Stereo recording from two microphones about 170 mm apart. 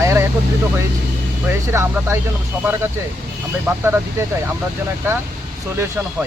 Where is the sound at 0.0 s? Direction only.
15° right (ahead or behind).